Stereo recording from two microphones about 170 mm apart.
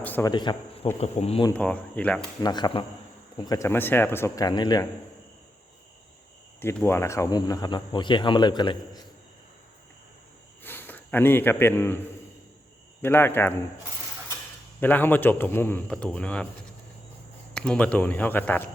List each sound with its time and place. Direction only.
0.0 s a sound: 10° left (ahead or behind)
0.3 s speech: 25° left (ahead or behind)
0.9 s speech: 40° left (ahead or behind)
1.5 s a man's voice: 10° left (ahead or behind)
2.4 s a man's voice: 25° left (ahead or behind)
6.6 s speech: 15° left (ahead or behind)
10.6 s a sound: 10° left (ahead or behind)
13.0 s a man's voice: 10° left (ahead or behind)
14.8 s a man's voice: 10° left (ahead or behind)
17.5 s a man's voice: 5° left (ahead or behind)